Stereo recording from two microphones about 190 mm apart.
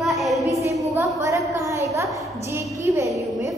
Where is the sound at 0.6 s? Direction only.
15° right (ahead or behind).